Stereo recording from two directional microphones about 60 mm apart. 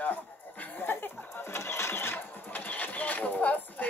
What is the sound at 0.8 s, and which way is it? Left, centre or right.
Speech, left.